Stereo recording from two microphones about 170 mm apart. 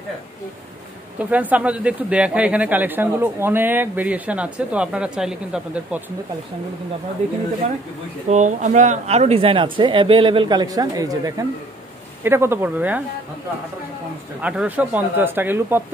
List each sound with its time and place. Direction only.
1.3 s speech: 10° right (ahead or behind)
8.3 s speech: 45° right (ahead or behind); by 13.0 s 10° right (ahead or behind)
14.4 s speech: 5° right (ahead or behind)